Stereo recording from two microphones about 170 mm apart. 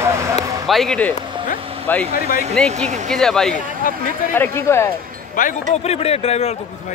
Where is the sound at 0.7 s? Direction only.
Centre (ahead or behind).